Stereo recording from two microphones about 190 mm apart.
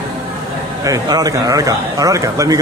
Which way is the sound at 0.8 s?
20° right (ahead or behind).